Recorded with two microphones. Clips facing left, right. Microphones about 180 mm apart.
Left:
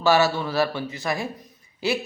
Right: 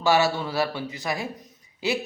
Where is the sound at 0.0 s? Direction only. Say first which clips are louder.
Left 2 dB; 15° right (ahead or behind).